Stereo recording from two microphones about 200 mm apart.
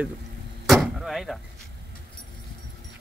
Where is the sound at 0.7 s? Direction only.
Centre (ahead or behind).